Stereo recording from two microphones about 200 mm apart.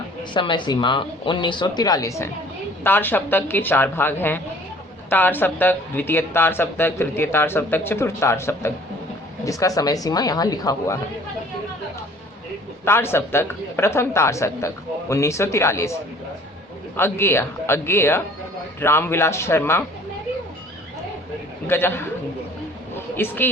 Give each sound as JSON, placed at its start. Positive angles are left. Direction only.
{"t": 0.3, "sound": "speech", "side_deg": 25}
{"t": 12.8, "sound": "speech", "side_deg": 10}
{"t": 17.0, "sound": "speech", "side_deg": 10}
{"t": 21.7, "sound": "speech", "side_deg": 10}
{"t": 23.0, "sound": "a sound", "side_deg": 10}